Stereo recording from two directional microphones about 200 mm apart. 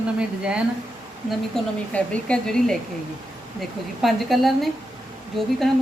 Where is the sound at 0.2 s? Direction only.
5° right (ahead or behind).